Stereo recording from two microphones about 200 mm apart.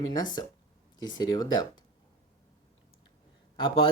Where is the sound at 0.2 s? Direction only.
20° left (ahead or behind).